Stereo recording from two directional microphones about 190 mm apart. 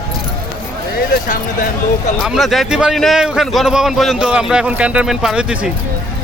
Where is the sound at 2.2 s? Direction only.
Centre (ahead or behind).